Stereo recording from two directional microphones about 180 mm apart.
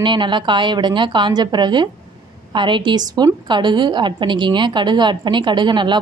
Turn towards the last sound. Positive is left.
turn(degrees=-25)  # may be behind; listen again after turning